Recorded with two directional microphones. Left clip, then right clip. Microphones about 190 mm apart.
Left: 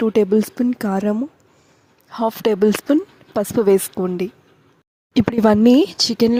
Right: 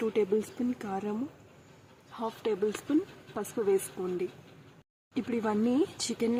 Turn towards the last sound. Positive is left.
turn(degrees=45)  # may be behind; listen again after turning